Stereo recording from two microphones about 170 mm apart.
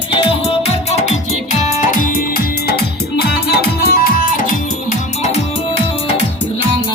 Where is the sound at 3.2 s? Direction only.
65° left (ahead or behind); by 4.6 s 50° left (ahead or behind).